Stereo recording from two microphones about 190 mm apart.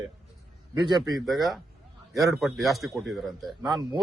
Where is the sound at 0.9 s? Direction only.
20° right (ahead or behind).